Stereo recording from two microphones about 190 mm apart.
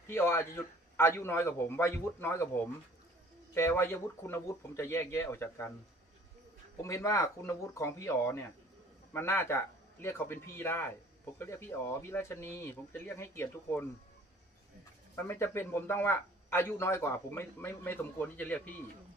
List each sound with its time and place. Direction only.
0.0 s a man's voice: 15° left (ahead or behind)
6.8 s a man's voice: 15° left (ahead or behind)
15.1 s a man's voice: 15° left (ahead or behind)